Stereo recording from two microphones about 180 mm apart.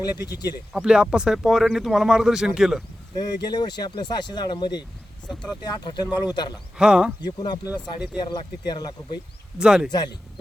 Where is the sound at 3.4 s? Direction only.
25° left (ahead or behind).